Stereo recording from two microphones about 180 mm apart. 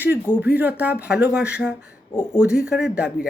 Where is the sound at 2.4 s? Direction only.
5° right (ahead or behind).